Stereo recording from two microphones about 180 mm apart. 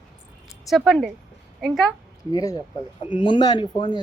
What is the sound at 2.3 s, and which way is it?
Speech, 20° left (ahead or behind).